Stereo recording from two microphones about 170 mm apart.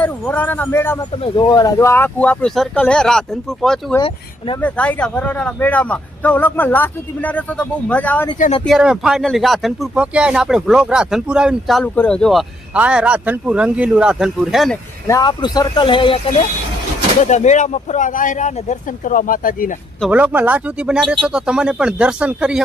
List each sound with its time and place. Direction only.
0.0 s speech: 10° left (ahead or behind)
1.2 s speech: 25° left (ahead or behind); by 3.9 s centre (ahead or behind)
3.9 s speech: 30° left (ahead or behind)
4.6 s speech: 5° left (ahead or behind)
8.4 s speech: 40° left (ahead or behind)
8.6 s speech: 5° right (ahead or behind)
11.8 s speech: 5° left (ahead or behind)
15.0 s speech: 20° left (ahead or behind)
17.2 s speech: 45° left (ahead or behind)
20.1 s speech: 10° right (ahead or behind)